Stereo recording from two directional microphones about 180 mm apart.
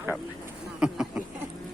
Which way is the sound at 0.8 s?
5° right (ahead or behind).